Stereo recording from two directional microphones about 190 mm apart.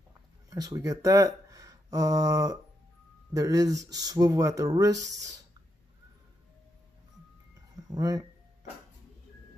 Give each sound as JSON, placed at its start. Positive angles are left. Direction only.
{"t": 0.5, "sound": "speech", "side_deg": -15}
{"t": 7.9, "sound": "speech", "side_deg": -20}